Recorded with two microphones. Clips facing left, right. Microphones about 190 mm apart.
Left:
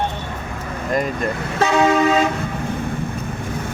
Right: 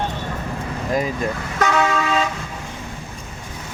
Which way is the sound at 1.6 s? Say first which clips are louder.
Left 2 dB; 30° left (ahead or behind).